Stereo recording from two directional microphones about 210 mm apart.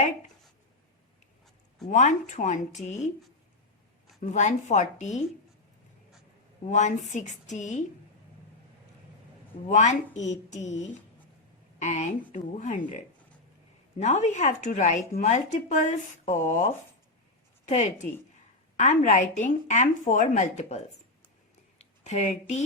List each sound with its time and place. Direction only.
1.9 s speech: 35° left (ahead or behind)
4.2 s speech: 35° left (ahead or behind)
6.7 s speech: 35° left (ahead or behind)
9.6 s speech: 35° left (ahead or behind)
11.8 s speech: 35° left (ahead or behind)
14.0 s speech: 35° left (ahead or behind)
21.8 s a sound: 30° left (ahead or behind)